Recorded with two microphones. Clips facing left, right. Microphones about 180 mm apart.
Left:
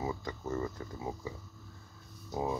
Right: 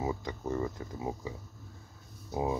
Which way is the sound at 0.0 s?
20° right (ahead or behind).